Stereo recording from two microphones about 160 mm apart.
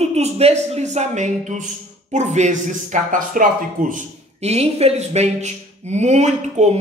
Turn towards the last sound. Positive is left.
turn(degrees=-45)  # may be behind; listen again after turning